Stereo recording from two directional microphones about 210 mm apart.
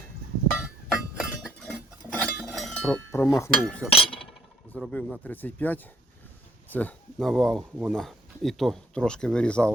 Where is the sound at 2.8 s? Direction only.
10° left (ahead or behind).